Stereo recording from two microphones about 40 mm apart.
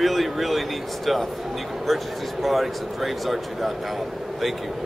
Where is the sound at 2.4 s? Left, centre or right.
Centre.